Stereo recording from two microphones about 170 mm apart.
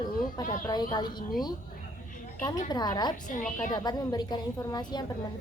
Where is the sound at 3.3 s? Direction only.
50° left (ahead or behind).